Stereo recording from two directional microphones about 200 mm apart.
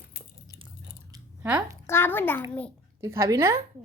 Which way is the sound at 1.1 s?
10° right (ahead or behind).